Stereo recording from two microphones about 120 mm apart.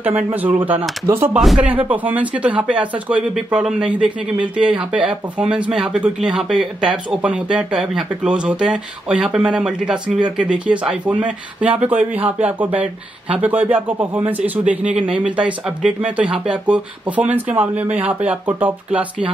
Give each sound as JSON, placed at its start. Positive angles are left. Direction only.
{"t": 0.0, "sound": "speech", "side_deg": -15}
{"t": 1.4, "sound": "speech", "side_deg": 0}
{"t": 1.7, "sound": "speech", "side_deg": -15}